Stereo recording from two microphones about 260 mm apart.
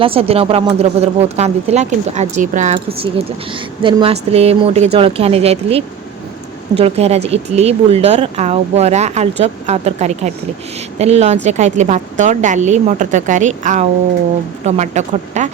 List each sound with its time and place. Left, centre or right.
0.0 s speech: right